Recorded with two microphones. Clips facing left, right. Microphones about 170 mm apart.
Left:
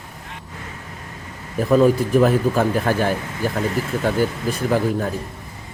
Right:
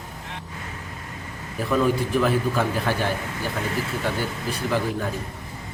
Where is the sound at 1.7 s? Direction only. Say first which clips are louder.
Left 6 dB; 45° left (ahead or behind).